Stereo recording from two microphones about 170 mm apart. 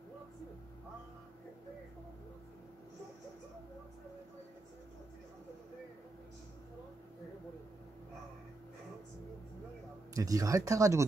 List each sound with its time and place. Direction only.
10.1 s speech: 20° right (ahead or behind)